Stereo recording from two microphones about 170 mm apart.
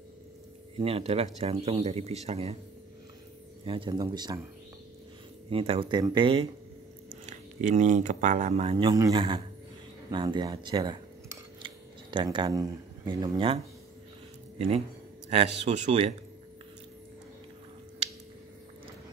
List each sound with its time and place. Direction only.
0.7 s speech: 35° right (ahead or behind)
3.6 s speech: 30° right (ahead or behind)
5.5 s speech: 35° right (ahead or behind)
7.1 s speech: 50° right (ahead or behind); by 9.4 s 30° right (ahead or behind)
10.1 s scissors: 25° right (ahead or behind)
15.2 s speech: 40° right (ahead or behind)